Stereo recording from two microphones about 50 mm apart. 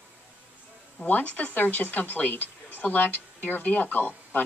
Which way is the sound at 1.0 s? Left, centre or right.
Left.